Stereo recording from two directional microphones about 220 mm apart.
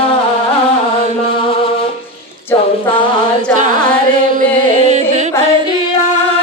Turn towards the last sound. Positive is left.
turn(degrees=-35)  # may be behind; listen again after turning